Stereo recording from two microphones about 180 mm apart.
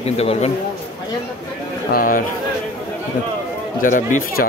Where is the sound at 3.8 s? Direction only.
45° left (ahead or behind).